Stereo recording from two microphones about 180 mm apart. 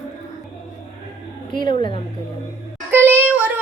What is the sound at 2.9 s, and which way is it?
Child singing, 10° right (ahead or behind).